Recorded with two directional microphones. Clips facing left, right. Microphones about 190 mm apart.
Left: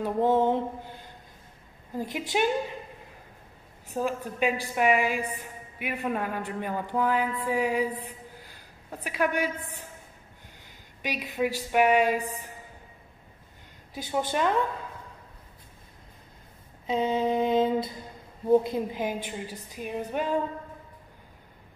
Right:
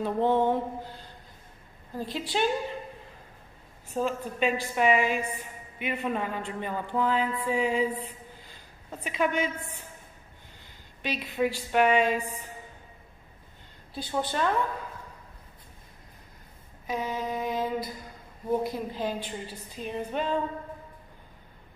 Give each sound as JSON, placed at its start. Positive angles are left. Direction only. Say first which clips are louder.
{"t": 0.0, "sound": "a woman's voice", "louder": "left 1 dB", "side_deg": 10}
{"t": 2.0, "sound": "a woman's voice", "louder": "left 2 dB", "side_deg": 15}
{"t": 3.9, "sound": "a woman's voice", "louder": "even", "side_deg": 10}
{"t": 7.4, "sound": "a sound", "louder": "right 1 dB", "side_deg": 10}
{"t": 8.9, "sound": "a woman's voice", "louder": "even", "side_deg": 10}
{"t": 11.0, "sound": "a woman's voice", "louder": "right 1 dB", "side_deg": 10}
{"t": 12.2, "sound": "a woman's voice", "louder": "left 1 dB", "side_deg": 35}
{"t": 13.9, "sound": "a woman's voice", "louder": "left 2 dB", "side_deg": 15}
{"t": 16.8, "sound": "a sound", "louder": "left 6 dB", "side_deg": 25}
{"t": 18.6, "sound": "a woman's voice", "louder": "left 1 dB", "side_deg": 20}